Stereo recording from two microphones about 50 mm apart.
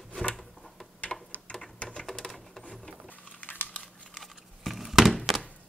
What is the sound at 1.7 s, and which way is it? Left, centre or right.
Typewriter, left.